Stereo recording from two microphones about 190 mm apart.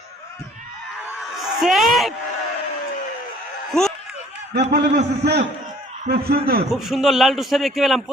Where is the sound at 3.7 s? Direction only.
Centre (ahead or behind).